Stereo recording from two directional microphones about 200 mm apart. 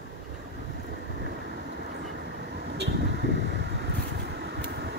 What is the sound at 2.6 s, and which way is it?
Vehicle, 55° right (ahead or behind).